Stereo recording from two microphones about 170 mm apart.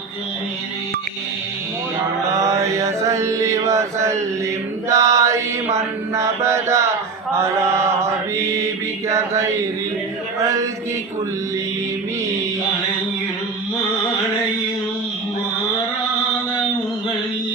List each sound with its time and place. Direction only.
2.4 s mantra: 20° right (ahead or behind)
4.9 s chant: 20° right (ahead or behind)
5.7 s mantra: 15° right (ahead or behind)